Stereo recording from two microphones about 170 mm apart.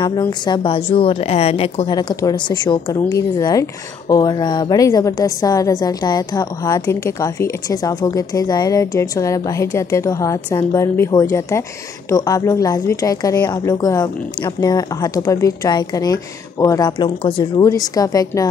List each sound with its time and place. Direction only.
0.0 s speech: 25° left (ahead or behind)
1.9 s a woman's voice: 25° left (ahead or behind)